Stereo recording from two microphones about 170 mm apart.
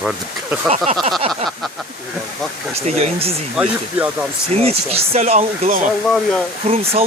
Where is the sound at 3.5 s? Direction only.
5° right (ahead or behind).